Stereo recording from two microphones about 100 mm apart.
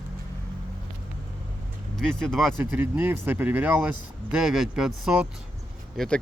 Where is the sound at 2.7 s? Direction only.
20° right (ahead or behind).